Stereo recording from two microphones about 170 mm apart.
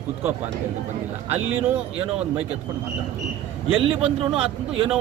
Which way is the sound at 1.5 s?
10° right (ahead or behind).